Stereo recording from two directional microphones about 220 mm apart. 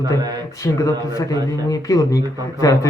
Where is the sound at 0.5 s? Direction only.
15° left (ahead or behind).